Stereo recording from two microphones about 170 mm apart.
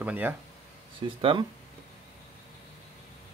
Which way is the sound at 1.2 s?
30° right (ahead or behind).